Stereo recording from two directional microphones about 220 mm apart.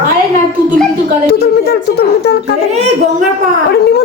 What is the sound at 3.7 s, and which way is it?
Speech, 45° left (ahead or behind).